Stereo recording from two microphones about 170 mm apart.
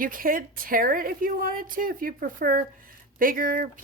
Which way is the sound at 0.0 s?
55° right (ahead or behind).